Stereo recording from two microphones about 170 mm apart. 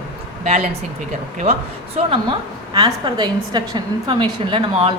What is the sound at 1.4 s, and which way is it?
A woman's voice, 35° right (ahead or behind).